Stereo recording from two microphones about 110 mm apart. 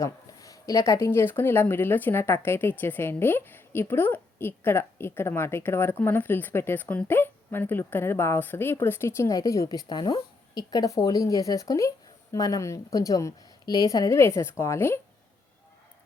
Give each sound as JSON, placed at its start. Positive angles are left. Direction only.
{"t": 0.0, "sound": "speech", "side_deg": 30}